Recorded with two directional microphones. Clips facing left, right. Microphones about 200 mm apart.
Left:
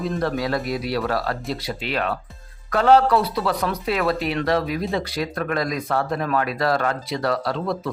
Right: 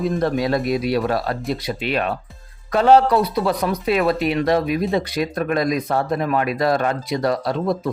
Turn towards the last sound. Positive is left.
turn(degrees=-20)  # may be behind; listen again after turning